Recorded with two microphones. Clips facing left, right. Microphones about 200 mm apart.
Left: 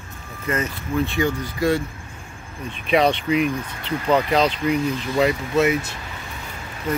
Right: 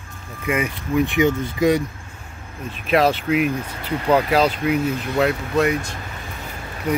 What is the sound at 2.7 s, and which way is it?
Speech, 5° right (ahead or behind).